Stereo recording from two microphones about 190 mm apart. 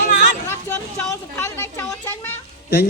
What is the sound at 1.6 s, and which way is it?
Speech, 10° left (ahead or behind).